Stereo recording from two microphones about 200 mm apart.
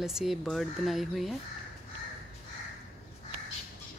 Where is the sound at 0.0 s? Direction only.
Centre (ahead or behind).